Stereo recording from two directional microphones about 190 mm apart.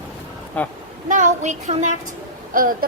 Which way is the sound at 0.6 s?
10° left (ahead or behind).